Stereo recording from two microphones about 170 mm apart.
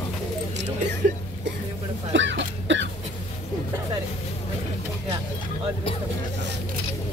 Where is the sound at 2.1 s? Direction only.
90° right.